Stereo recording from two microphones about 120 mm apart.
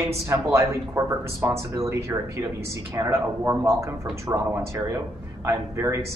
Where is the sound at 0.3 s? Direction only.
25° right (ahead or behind).